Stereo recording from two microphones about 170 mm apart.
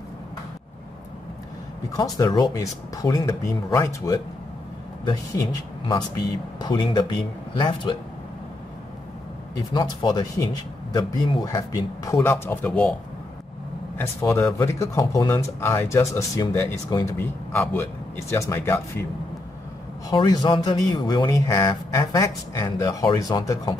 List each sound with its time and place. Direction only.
2.1 s speech: 25° left (ahead or behind)
9.6 s speech: 25° left (ahead or behind); by 12.9 s 5° left (ahead or behind)
13.9 s speech: 15° left (ahead or behind)
20.1 s speech: 25° left (ahead or behind)